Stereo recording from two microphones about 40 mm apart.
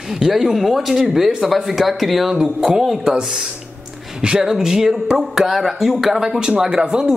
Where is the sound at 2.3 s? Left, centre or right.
Centre.